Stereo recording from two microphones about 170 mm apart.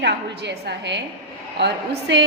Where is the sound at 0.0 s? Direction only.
80° right.